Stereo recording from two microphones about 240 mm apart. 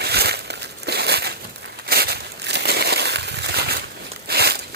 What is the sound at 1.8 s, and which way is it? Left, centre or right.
Crushing, right.